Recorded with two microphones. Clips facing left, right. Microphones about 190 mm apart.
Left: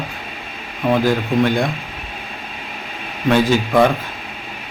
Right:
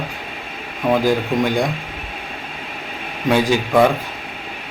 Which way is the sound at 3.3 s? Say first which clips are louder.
Left 1 dB; 10° right (ahead or behind).